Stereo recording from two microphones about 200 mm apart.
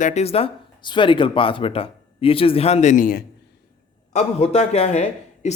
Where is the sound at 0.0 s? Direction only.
35° left (ahead or behind).